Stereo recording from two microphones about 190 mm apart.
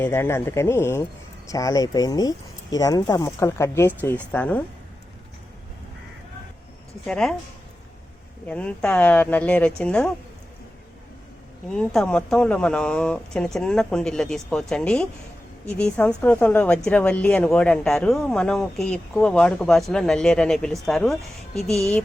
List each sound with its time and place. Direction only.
0.0 s speech: 10° left (ahead or behind)
7.0 s speech: centre (ahead or behind)
8.4 s speech: 5° left (ahead or behind)
11.7 s speech: 5° left (ahead or behind)